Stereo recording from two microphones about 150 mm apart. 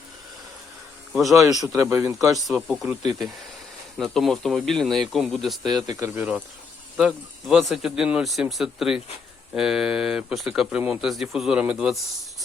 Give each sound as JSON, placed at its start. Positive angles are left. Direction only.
{"t": 1.1, "sound": "speech", "side_deg": 0}
{"t": 1.6, "sound": "speech", "side_deg": -20}
{"t": 2.3, "sound": "speech", "side_deg": 0}
{"t": 3.9, "sound": "speech", "side_deg": 0}
{"t": 5.7, "sound": "speech", "side_deg": -25}
{"t": 6.9, "sound": "speech", "side_deg": 0}